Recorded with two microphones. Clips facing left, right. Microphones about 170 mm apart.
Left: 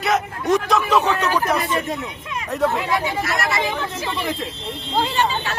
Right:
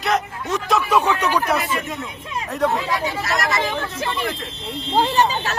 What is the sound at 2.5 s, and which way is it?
Speech, centre (ahead or behind).